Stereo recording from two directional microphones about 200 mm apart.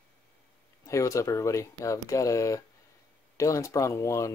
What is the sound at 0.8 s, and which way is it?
Speech, 15° left (ahead or behind).